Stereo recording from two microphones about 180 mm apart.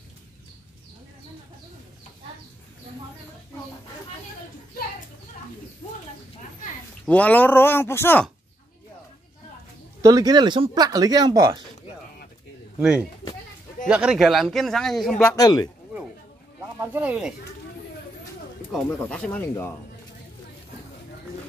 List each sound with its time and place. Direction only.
7.1 s speech: 10° left (ahead or behind)
10.0 s speech: 20° right (ahead or behind)
12.7 s speech: 5° right (ahead or behind)
15.1 s speech: 15° left (ahead or behind)
16.8 s speech: 10° right (ahead or behind)
18.7 s speech: 5° left (ahead or behind)